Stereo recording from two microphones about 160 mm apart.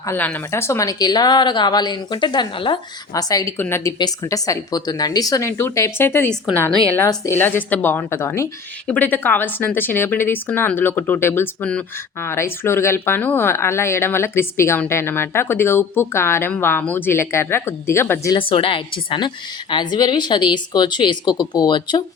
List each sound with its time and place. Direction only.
0.0 s speech: 15° left (ahead or behind)
18.3 s a woman's voice: 35° left (ahead or behind)